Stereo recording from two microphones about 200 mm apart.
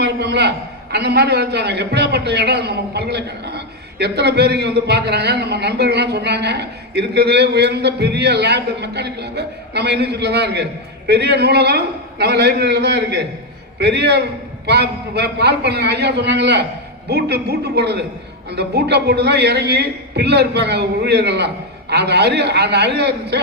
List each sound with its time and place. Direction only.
0.0 s a man's voice: 55° right (ahead or behind)